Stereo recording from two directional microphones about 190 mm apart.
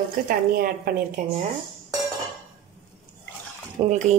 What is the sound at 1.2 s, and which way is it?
Speech, 45° right (ahead or behind).